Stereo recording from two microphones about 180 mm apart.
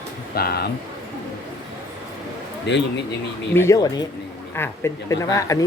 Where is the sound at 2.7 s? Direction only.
75° left (ahead or behind).